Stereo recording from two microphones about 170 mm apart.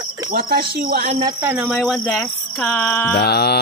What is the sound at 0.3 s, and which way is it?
Speech, 65° right (ahead or behind).